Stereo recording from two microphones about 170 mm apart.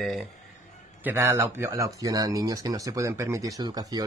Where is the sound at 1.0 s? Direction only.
15° right (ahead or behind).